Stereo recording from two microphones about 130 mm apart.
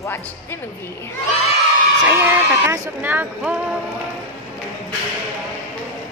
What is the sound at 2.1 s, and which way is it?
Speech, 20° right (ahead or behind).